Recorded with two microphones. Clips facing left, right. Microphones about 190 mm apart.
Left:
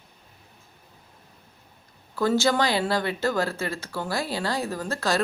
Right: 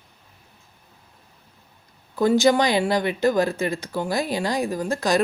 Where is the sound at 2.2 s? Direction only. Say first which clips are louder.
Right 5 dB; 15° right (ahead or behind).